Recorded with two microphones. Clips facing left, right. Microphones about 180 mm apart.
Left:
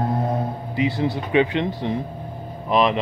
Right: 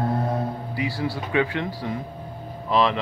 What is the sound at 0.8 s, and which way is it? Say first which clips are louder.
A man's voice: left 6 dB; 20° left (ahead or behind).